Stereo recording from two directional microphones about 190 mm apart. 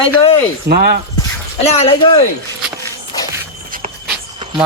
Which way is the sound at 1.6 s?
35° left (ahead or behind).